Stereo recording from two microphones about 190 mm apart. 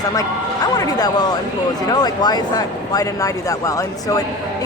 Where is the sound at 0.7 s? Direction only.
20° left (ahead or behind).